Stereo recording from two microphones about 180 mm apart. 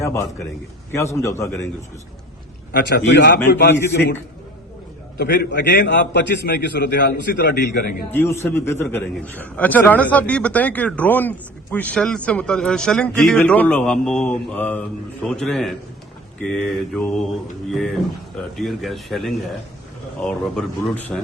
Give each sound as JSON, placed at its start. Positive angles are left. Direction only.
{"t": 0.0, "sound": "a man's voice", "side_deg": 15}
{"t": 2.7, "sound": "a man's voice", "side_deg": 65}
{"t": 5.1, "sound": "a man's voice", "side_deg": 65}
{"t": 8.1, "sound": "speech", "side_deg": 15}